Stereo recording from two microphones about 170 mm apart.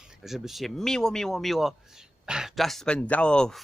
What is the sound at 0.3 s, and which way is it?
A man's voice, centre (ahead or behind).